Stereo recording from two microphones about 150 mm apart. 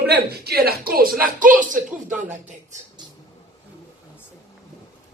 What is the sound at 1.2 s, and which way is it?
A man's voice, 60° right (ahead or behind).